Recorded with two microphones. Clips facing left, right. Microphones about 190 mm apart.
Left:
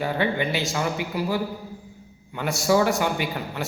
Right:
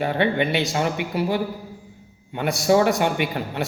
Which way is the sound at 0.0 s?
20° right (ahead or behind).